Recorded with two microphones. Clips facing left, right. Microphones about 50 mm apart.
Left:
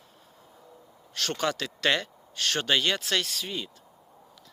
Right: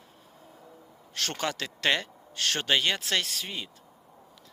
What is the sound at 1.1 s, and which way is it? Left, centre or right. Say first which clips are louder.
Speech: left 2 dB; right.